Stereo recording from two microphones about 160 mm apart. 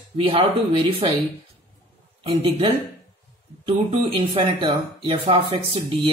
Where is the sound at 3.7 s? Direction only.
35° right (ahead or behind).